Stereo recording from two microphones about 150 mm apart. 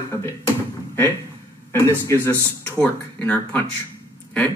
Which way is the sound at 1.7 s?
15° left (ahead or behind).